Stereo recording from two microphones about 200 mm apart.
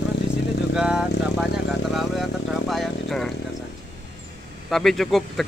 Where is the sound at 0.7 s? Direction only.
5° right (ahead or behind).